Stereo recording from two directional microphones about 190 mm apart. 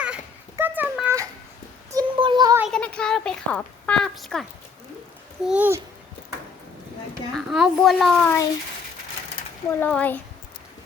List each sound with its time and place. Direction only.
0.0 s a sound: 10° right (ahead or behind)
1.9 s child singing: 25° right (ahead or behind)
2.6 s a sound: centre (ahead or behind)
5.5 s a child's voice: 10° right (ahead or behind)
7.3 s a woman's voice: centre (ahead or behind)
9.8 s speech: 10° left (ahead or behind)